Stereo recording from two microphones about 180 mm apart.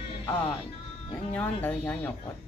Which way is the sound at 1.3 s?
10° left (ahead or behind).